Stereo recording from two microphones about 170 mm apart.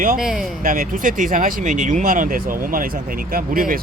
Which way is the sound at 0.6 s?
55° right (ahead or behind).